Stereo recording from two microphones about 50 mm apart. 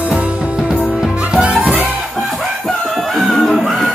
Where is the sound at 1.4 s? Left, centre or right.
Right.